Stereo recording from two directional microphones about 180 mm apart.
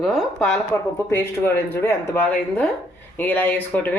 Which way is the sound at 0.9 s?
15° left (ahead or behind).